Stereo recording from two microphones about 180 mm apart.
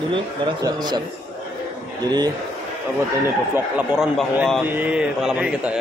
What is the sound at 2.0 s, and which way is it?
Speech, 25° right (ahead or behind).